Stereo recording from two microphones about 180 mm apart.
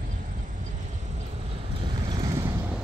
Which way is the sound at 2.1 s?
20° right (ahead or behind).